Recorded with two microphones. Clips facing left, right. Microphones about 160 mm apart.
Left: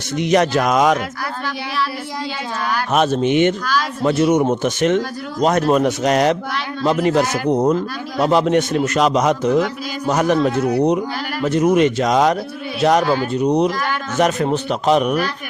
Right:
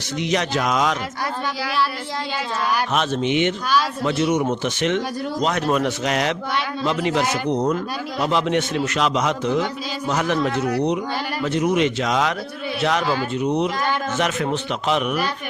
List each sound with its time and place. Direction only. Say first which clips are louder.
0.2 s speech: left 6 dB; 50° left (ahead or behind)
2.9 s a man's voice: left 9 dB; 45° left (ahead or behind)
11.4 s a man's voice: left 5 dB; 45° left (ahead or behind)